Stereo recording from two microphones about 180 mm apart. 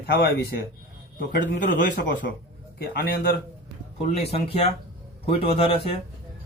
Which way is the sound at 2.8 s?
60° left (ahead or behind).